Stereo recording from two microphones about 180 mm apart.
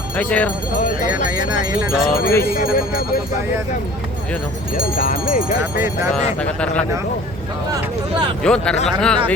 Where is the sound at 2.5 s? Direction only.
55° left (ahead or behind).